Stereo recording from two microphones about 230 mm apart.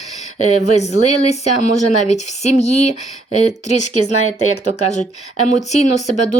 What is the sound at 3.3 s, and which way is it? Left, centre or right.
Speech, left.